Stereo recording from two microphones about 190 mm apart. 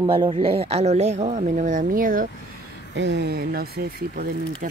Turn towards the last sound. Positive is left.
turn(degrees=-50)  # may be behind; listen again after turning